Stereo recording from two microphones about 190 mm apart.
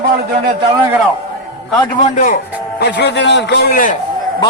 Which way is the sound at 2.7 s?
65° left (ahead or behind).